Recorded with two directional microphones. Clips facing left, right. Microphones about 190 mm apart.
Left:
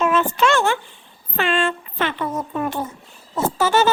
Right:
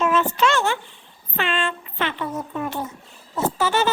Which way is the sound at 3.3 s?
45° left (ahead or behind).